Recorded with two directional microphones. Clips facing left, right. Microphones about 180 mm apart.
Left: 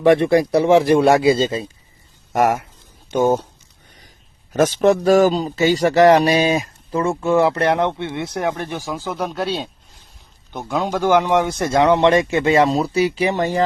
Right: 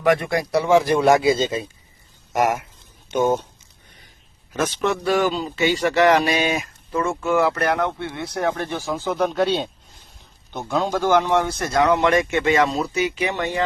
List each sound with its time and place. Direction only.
0.0 s speech: 30° left (ahead or behind)
3.1 s speech: 30° left (ahead or behind)
4.5 s speech: 40° left (ahead or behind); by 9.6 s centre (ahead or behind)
10.5 s speech: 15° left (ahead or behind); by 13.6 s 40° left (ahead or behind)